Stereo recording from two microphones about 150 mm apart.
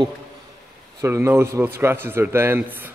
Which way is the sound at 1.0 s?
20° right (ahead or behind).